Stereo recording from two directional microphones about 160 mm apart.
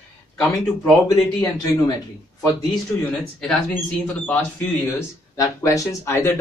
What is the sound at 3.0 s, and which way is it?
Speech, 5° left (ahead or behind).